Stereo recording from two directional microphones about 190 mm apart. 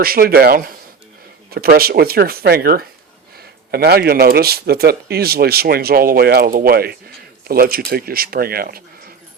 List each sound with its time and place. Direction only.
0.0 s speech: 50° right (ahead or behind)